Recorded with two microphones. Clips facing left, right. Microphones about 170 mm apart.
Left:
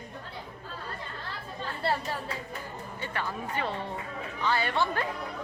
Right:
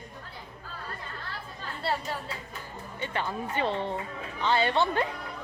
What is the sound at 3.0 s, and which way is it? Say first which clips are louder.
Speech: right 3 dB; 20° right (ahead or behind).